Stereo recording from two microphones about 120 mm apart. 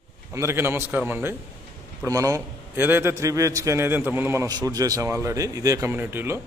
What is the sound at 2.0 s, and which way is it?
A man's voice, 25° right (ahead or behind).